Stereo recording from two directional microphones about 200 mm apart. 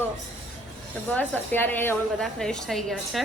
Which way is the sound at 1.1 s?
10° left (ahead or behind).